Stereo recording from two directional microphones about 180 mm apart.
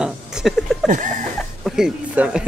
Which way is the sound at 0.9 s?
45° right (ahead or behind).